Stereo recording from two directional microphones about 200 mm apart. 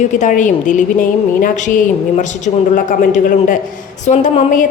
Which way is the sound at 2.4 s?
40° left (ahead or behind).